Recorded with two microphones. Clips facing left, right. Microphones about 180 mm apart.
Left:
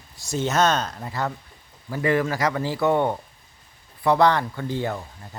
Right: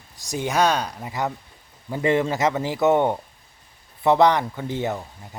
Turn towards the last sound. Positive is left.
turn(degrees=-20)  # may be behind; listen again after turning